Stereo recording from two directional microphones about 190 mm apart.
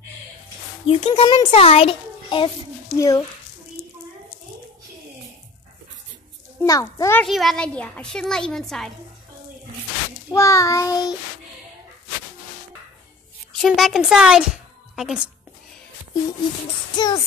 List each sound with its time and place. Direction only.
0.8 s a child's voice: 30° left (ahead or behind)
3.0 s child singing: 15° left (ahead or behind)
6.6 s child singing: 15° left (ahead or behind)
7.2 s speech: centre (ahead or behind)
10.3 s child singing: 15° left (ahead or behind)
13.5 s a woman's voice: centre (ahead or behind)
16.9 s music: 20° left (ahead or behind)